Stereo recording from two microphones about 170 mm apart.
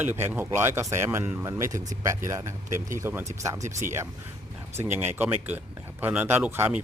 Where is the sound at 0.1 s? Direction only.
10° right (ahead or behind).